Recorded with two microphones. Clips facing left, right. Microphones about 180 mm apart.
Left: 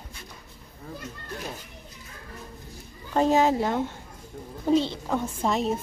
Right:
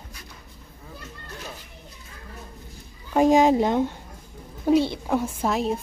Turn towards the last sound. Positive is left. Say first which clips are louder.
# right 1 dB
turn(degrees=0)  # may be behind; listen again after turning